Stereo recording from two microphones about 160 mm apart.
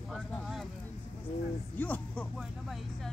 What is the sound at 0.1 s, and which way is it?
Speech, centre (ahead or behind).